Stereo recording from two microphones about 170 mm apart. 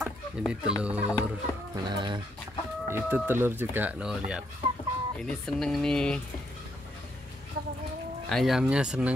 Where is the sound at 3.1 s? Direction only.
15° right (ahead or behind); by 6.2 s 5° left (ahead or behind).